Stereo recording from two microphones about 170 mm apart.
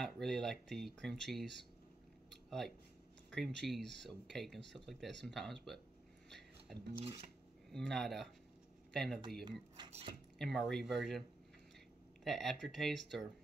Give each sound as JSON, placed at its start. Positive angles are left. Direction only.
{"t": 0.0, "sound": "speech", "side_deg": 0}
{"t": 2.3, "sound": "a sound", "side_deg": 0}
{"t": 3.3, "sound": "speech", "side_deg": 5}
{"t": 7.0, "sound": "filing", "side_deg": -35}
{"t": 7.7, "sound": "speech", "side_deg": 0}
{"t": 9.8, "sound": "speech", "side_deg": -40}
{"t": 10.4, "sound": "speech", "side_deg": 0}
{"t": 12.3, "sound": "speech", "side_deg": 0}